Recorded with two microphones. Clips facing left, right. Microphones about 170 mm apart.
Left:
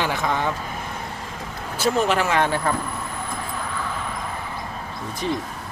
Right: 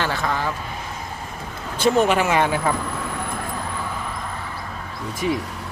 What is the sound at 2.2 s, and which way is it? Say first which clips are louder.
Speech: right 1 dB; 10° right (ahead or behind).